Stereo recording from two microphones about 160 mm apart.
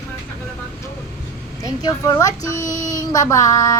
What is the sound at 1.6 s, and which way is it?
Speech, 20° left (ahead or behind).